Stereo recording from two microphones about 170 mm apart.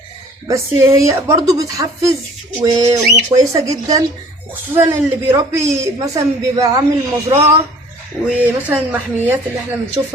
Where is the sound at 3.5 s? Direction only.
20° right (ahead or behind).